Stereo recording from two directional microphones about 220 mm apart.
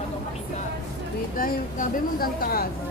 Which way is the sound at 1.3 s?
40° left (ahead or behind).